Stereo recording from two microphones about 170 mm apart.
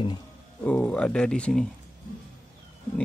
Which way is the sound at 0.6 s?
5° left (ahead or behind).